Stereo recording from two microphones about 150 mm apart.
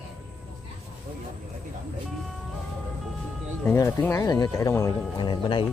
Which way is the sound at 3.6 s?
15° left (ahead or behind).